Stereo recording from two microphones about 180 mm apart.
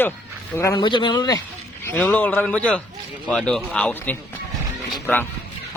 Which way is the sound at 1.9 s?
10° left (ahead or behind).